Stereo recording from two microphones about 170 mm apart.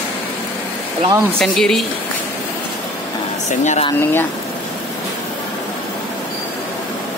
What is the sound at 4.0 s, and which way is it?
Speech, 15° left (ahead or behind).